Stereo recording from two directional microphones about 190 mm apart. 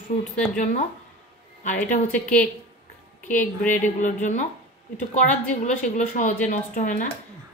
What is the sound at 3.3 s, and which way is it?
A woman's voice, 40° left (ahead or behind).